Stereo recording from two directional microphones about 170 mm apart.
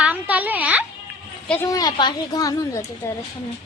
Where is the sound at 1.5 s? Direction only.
15° left (ahead or behind).